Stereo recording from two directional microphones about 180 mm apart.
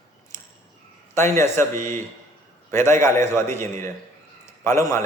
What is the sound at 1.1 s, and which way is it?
A man's voice, 15° left (ahead or behind).